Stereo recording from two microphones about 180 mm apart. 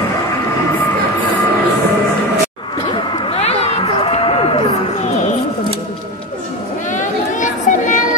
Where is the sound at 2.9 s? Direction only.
35° left (ahead or behind).